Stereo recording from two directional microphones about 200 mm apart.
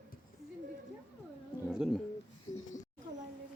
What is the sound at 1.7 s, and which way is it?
Speech, 5° right (ahead or behind).